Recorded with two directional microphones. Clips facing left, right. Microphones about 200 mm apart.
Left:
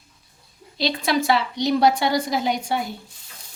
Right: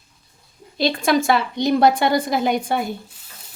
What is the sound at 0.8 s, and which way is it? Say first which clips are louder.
A woman's voice: right 4 dB; 50° right (ahead or behind).